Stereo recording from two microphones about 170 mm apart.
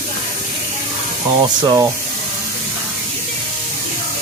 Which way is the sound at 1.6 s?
25° right (ahead or behind).